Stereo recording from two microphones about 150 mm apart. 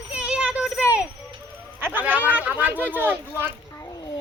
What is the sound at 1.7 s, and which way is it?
Speech, 10° right (ahead or behind).